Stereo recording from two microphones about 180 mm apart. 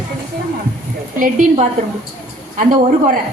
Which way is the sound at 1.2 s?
40° right (ahead or behind).